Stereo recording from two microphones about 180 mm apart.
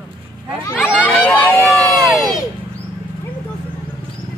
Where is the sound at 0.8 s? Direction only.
5° right (ahead or behind).